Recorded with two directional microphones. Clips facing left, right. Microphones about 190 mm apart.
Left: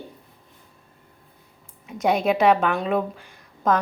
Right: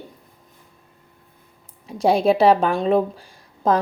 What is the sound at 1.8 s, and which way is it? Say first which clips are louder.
A woman's voice: right 4 dB; 30° right (ahead or behind).